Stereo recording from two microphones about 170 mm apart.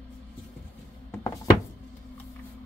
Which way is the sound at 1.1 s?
20° left (ahead or behind).